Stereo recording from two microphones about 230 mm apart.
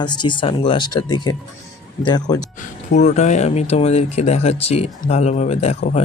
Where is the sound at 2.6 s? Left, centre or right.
Left.